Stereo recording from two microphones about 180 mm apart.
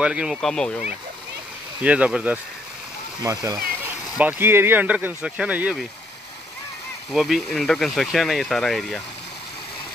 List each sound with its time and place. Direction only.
0.0 s speech: 5° right (ahead or behind)
1.8 s speech: 5° right (ahead or behind)
3.2 s speech: 20° right (ahead or behind)
7.1 s speech: centre (ahead or behind)